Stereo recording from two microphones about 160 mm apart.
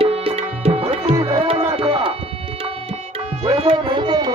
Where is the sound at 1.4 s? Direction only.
35° right (ahead or behind).